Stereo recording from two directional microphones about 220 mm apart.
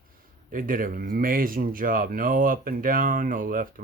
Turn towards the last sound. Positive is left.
turn(degrees=-40)  # may be behind; listen again after turning